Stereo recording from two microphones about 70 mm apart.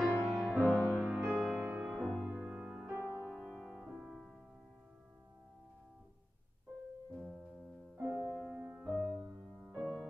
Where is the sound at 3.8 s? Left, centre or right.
Centre.